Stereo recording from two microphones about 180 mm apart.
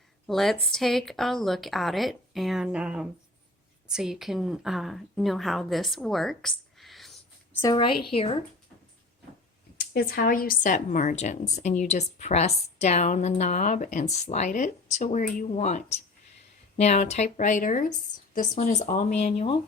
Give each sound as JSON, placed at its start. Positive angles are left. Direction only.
{"t": 0.3, "sound": "a woman's voice", "side_deg": 0}
{"t": 7.6, "sound": "a woman's voice", "side_deg": 25}
{"t": 9.7, "sound": "a woman's voice", "side_deg": 55}